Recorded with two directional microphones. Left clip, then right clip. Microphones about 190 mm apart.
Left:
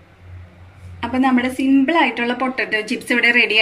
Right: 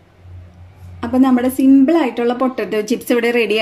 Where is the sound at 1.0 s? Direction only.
40° right (ahead or behind).